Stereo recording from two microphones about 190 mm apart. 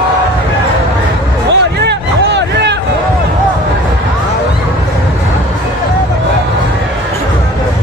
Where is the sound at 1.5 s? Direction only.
65° right (ahead or behind).